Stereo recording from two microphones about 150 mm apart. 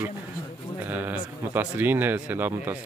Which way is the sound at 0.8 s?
10° right (ahead or behind).